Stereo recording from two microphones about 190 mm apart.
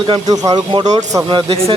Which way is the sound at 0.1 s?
20° right (ahead or behind).